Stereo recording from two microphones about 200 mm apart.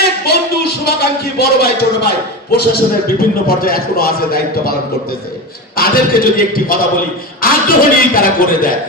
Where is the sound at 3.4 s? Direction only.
50° left (ahead or behind).